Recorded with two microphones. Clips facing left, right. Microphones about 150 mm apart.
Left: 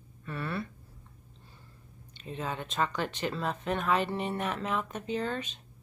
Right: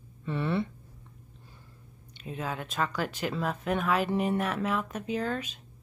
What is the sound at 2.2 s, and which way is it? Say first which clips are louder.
Speech: right 1 dB; 5° right (ahead or behind).